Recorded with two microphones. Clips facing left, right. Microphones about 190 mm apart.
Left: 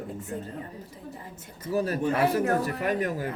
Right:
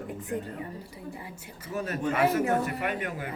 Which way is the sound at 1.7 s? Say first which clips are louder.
Left 4 dB; 35° left (ahead or behind).